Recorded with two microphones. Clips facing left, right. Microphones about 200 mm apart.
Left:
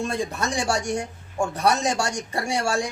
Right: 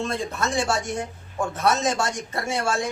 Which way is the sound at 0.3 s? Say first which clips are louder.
Right 1 dB; 15° left (ahead or behind).